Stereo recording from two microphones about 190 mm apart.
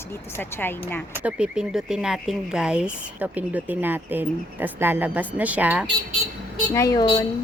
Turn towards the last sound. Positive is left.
turn(degrees=25)  # may be behind; listen again after turning